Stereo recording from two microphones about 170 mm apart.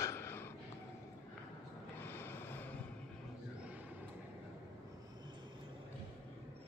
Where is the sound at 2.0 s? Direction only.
15° left (ahead or behind).